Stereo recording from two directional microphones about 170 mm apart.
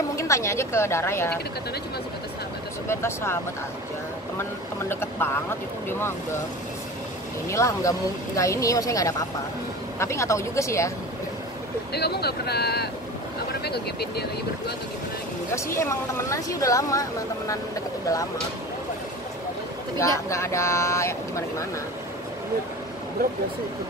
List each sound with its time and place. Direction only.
0.1 s speech: 15° left (ahead or behind)
2.9 s speech: 15° left (ahead or behind)
4.4 s speech: 15° left (ahead or behind)
7.4 s speech: 15° left (ahead or behind)
11.9 s speech: 70° left (ahead or behind)
15.5 s speech: 15° left (ahead or behind)
20.0 s speech: 15° left (ahead or behind)